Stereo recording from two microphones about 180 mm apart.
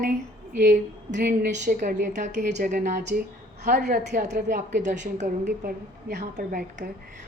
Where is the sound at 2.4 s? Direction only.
65° right (ahead or behind); by 3.0 s 50° right (ahead or behind).